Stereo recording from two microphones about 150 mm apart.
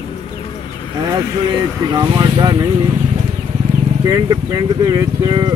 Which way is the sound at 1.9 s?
25° right (ahead or behind).